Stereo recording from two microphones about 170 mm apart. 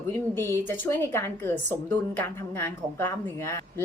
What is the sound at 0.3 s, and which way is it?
A woman's voice, 15° left (ahead or behind).